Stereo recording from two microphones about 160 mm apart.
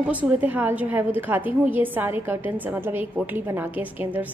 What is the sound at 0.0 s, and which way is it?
A woman's voice, 10° right (ahead or behind).